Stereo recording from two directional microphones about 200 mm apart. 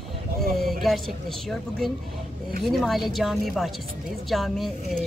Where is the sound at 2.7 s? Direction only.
Centre (ahead or behind).